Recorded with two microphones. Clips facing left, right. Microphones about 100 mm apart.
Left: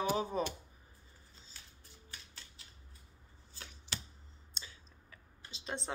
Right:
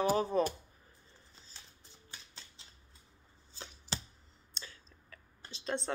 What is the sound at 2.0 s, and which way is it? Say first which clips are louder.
Typewriter: right 1 dB; 25° right (ahead or behind).